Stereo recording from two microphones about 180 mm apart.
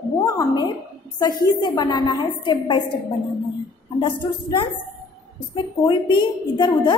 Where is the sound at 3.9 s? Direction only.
25° left (ahead or behind).